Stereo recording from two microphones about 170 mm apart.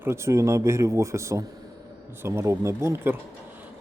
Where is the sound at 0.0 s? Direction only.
15° right (ahead or behind).